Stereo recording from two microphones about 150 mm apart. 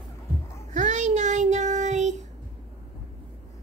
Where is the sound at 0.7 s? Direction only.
50° right (ahead or behind).